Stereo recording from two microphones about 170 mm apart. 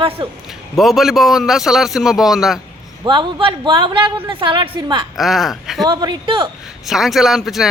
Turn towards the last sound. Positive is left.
turn(degrees=0)  # may be behind; listen again after turning